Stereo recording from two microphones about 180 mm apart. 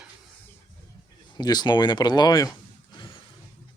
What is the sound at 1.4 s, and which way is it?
Speech, 25° left (ahead or behind).